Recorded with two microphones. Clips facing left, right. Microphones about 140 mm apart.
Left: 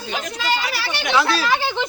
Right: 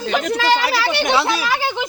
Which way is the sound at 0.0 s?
65° right (ahead or behind).